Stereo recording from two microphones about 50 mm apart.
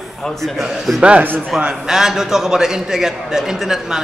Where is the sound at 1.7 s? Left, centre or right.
Centre.